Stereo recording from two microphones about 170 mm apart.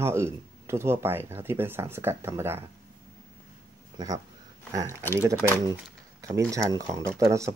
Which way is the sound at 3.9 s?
20° right (ahead or behind).